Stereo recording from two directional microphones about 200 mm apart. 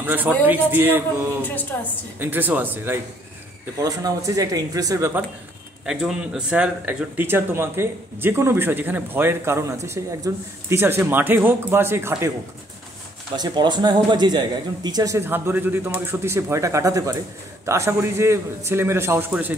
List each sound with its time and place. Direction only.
0.0 s a man's voice: 10° right (ahead or behind)
1.4 s a woman's voice: 10° left (ahead or behind)
2.1 s speech: 10° right (ahead or behind)
5.9 s speech: 5° right (ahead or behind)
13.4 s speech: 20° right (ahead or behind)